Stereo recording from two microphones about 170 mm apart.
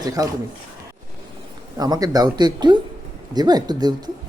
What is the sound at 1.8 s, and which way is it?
Mantra, 20° right (ahead or behind).